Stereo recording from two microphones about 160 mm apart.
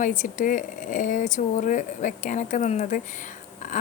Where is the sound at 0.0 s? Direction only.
50° left (ahead or behind).